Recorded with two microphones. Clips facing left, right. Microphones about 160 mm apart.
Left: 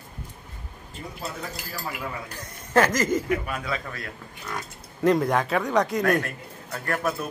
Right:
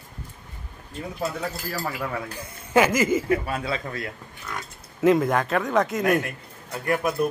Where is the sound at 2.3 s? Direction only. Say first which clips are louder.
Right 1 dB; 10° right (ahead or behind).